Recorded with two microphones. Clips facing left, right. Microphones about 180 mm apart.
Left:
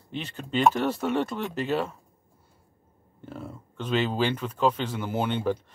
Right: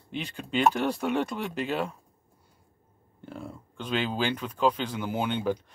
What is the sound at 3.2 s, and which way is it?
Speech, 5° left (ahead or behind).